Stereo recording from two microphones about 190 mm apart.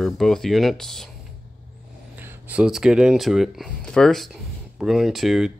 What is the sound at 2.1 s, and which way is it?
Speech, 10° right (ahead or behind).